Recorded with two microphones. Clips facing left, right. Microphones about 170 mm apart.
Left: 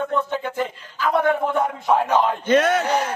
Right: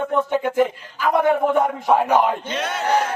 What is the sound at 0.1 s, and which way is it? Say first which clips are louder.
A man's voice: right 4 dB; 15° right (ahead or behind).